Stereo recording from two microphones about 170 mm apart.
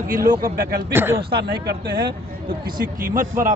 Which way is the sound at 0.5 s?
65° right (ahead or behind).